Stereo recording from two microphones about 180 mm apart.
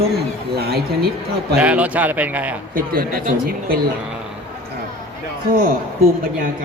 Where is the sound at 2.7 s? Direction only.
55° right (ahead or behind).